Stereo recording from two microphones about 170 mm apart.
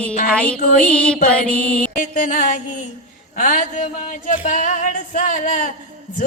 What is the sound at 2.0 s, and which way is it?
Music, 50° left (ahead or behind).